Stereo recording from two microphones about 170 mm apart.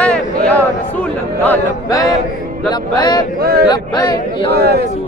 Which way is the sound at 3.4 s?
65° right (ahead or behind).